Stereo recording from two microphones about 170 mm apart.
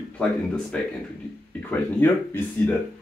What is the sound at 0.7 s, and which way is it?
Speech, 5° left (ahead or behind).